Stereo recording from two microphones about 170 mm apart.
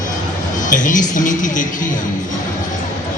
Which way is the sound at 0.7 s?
50° left (ahead or behind).